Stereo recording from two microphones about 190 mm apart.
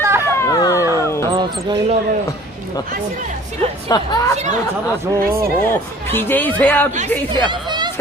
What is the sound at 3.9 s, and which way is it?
Speech, 20° left (ahead or behind).